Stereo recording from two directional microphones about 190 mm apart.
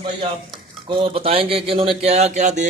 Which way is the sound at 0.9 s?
30° right (ahead or behind).